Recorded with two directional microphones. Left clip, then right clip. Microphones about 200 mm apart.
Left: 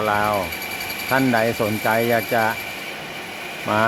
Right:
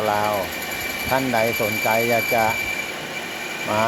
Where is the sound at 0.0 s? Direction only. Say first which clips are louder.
Left 1 dB; 15° left (ahead or behind).